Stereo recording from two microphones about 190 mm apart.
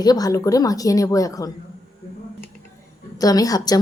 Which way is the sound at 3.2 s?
20° left (ahead or behind).